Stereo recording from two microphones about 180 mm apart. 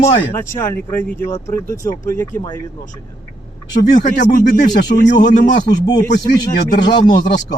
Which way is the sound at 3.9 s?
45° left (ahead or behind).